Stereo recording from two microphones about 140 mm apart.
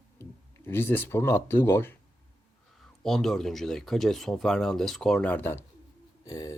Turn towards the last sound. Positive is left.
turn(degrees=25)  # may be behind; listen again after turning